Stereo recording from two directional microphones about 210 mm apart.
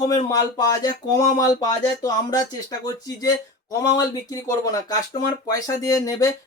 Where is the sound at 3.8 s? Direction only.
15° left (ahead or behind).